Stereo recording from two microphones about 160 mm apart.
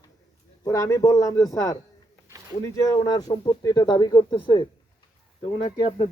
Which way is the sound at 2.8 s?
20° left (ahead or behind).